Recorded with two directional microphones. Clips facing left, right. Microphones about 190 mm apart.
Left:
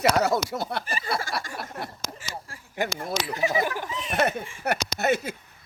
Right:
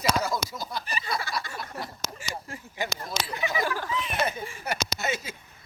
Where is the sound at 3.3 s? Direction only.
35° left (ahead or behind).